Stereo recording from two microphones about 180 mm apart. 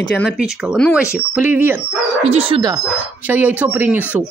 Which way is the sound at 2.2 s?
35° right (ahead or behind).